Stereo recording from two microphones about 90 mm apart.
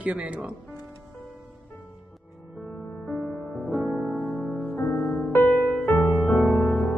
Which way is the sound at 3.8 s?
5° right (ahead or behind).